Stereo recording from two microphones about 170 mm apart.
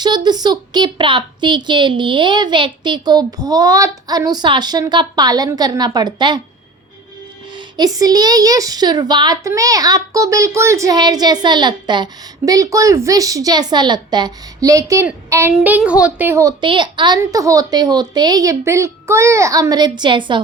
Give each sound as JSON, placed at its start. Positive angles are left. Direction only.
{"t": 0.3, "sound": "a woman's voice", "side_deg": -25}
{"t": 7.8, "sound": "a woman's voice", "side_deg": -20}